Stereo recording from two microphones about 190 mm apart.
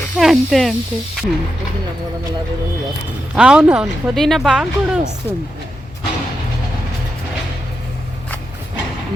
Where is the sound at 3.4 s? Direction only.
5° right (ahead or behind).